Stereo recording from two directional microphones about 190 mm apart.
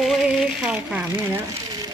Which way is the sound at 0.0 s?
Centre (ahead or behind).